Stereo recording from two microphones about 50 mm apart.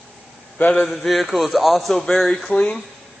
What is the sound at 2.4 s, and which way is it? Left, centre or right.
Speech, centre.